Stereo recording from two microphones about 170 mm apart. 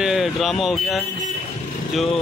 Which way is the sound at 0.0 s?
Centre (ahead or behind).